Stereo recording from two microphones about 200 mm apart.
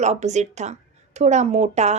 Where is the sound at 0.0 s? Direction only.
35° right (ahead or behind).